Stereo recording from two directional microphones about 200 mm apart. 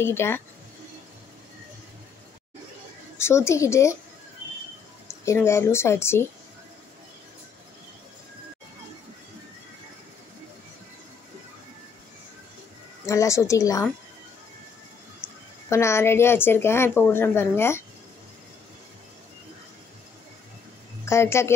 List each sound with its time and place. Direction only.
0.0 s speech: 10° left (ahead or behind)
3.2 s speech: 15° left (ahead or behind)
5.0 s speech: 15° left (ahead or behind)
13.0 s speech: 15° left (ahead or behind)
15.2 s speech: 15° left (ahead or behind)
21.0 s speech: 15° left (ahead or behind)